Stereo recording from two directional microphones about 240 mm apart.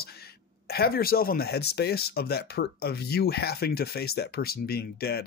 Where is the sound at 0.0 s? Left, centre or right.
Left.